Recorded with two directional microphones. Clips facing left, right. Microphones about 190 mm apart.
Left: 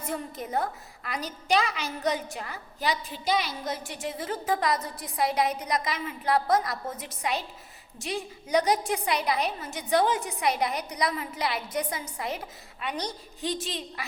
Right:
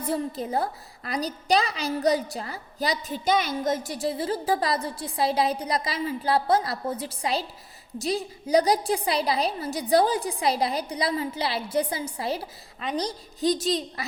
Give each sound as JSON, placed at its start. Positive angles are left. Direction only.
{"t": 0.0, "sound": "a woman's voice", "side_deg": -30}